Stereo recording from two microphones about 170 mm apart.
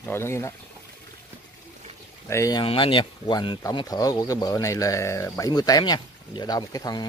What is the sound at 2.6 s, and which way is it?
Speech, 30° left (ahead or behind).